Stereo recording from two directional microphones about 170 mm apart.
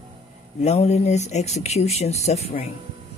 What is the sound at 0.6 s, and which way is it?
Speech, 40° left (ahead or behind).